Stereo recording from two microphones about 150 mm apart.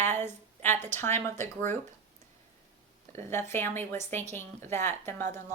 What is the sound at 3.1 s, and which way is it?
A woman's voice, 15° left (ahead or behind).